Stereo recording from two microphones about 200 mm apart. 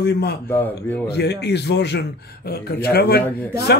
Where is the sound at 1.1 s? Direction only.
55° left (ahead or behind).